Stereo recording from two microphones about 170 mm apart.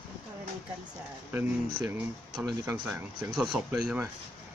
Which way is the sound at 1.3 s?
10° right (ahead or behind).